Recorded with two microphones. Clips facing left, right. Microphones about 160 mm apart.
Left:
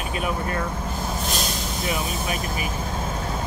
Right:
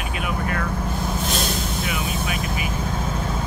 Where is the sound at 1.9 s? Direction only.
35° left (ahead or behind).